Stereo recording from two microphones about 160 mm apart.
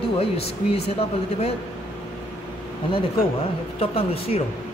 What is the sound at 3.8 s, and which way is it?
Speech, 35° left (ahead or behind).